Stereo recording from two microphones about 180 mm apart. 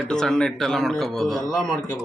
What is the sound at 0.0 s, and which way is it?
Speech, centre (ahead or behind).